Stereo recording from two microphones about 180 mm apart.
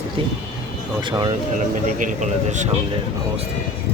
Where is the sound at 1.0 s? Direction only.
25° right (ahead or behind).